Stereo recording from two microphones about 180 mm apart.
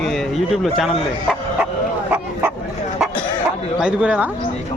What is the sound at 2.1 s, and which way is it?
Bow-wow, 10° right (ahead or behind).